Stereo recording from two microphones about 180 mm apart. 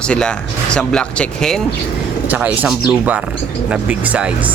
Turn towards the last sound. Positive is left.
turn(degrees=-5)  # may be behind; listen again after turning